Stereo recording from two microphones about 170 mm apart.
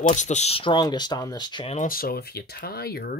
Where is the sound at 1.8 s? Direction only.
60° left (ahead or behind).